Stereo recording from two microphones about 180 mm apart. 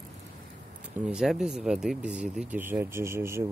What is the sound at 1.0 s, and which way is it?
Speech, 5° right (ahead or behind).